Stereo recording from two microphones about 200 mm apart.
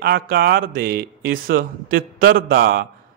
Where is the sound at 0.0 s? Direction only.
50° right (ahead or behind).